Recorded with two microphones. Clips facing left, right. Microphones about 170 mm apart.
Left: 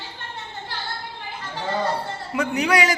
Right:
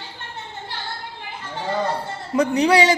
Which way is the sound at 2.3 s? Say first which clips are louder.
Right 5 dB; 35° right (ahead or behind).